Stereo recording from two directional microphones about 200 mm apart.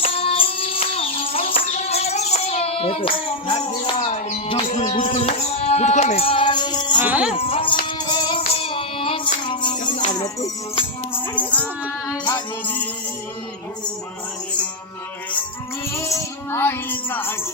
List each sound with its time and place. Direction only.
0.0 s music: 30° left (ahead or behind)
0.9 s child singing: 30° left (ahead or behind)
3.9 s music: 35° left (ahead or behind)
7.0 s speech: 5° right (ahead or behind)
7.3 s music: 30° left (ahead or behind); by 11.6 s 10° left (ahead or behind)
16.0 s music: 15° left (ahead or behind)